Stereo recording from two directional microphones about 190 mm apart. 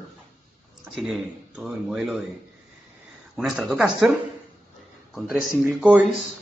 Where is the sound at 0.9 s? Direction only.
Centre (ahead or behind).